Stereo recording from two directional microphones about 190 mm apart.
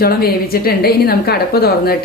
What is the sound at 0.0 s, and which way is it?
A woman's voice, 55° left (ahead or behind).